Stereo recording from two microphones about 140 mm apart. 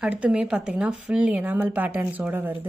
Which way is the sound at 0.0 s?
10° right (ahead or behind).